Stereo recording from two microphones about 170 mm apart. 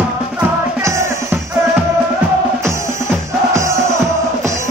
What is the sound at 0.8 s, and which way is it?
Music, 15° right (ahead or behind).